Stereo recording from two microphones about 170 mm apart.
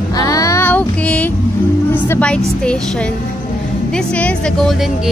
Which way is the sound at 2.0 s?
10° left (ahead or behind).